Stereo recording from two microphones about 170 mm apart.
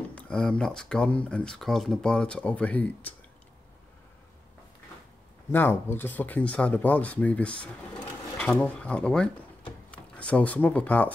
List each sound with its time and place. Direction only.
0.1 s speech: 5° left (ahead or behind)
5.5 s speech: 10° left (ahead or behind)